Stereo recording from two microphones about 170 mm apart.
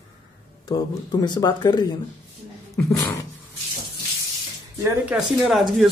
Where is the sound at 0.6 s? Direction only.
20° left (ahead or behind).